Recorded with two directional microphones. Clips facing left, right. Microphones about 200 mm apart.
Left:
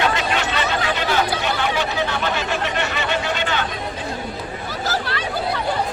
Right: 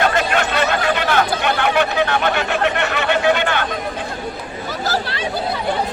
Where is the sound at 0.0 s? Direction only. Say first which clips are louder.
Right 3 dB; 50° right (ahead or behind).